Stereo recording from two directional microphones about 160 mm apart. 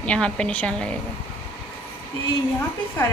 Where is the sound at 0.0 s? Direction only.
5° left (ahead or behind).